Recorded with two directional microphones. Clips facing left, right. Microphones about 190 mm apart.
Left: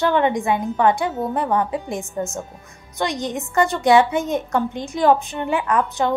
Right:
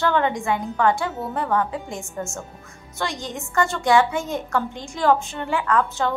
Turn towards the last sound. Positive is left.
turn(degrees=20)  # may be behind; listen again after turning